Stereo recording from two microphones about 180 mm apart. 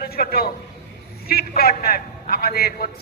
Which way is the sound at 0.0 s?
55° left (ahead or behind).